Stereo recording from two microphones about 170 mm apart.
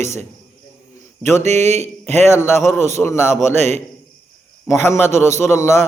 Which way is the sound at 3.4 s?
40° right (ahead or behind).